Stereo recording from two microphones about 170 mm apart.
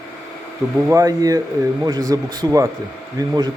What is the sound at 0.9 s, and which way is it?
Speech, 20° right (ahead or behind).